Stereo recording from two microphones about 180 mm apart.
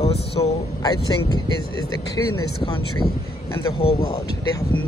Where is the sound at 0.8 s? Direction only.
20° left (ahead or behind).